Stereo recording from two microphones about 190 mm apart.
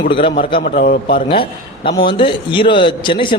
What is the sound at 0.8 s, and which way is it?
Speech, 55° left (ahead or behind).